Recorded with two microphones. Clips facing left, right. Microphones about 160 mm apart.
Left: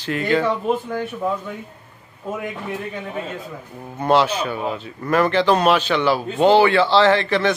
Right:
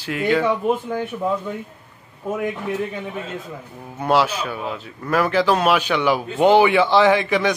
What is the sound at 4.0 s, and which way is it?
A man's voice, 5° right (ahead or behind).